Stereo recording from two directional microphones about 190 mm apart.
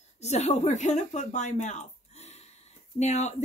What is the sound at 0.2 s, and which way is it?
Speech, 35° left (ahead or behind).